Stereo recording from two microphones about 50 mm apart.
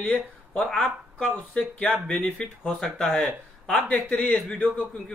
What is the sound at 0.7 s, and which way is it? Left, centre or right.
Speech, left.